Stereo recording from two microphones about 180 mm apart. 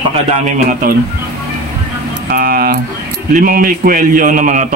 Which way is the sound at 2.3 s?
55° right (ahead or behind).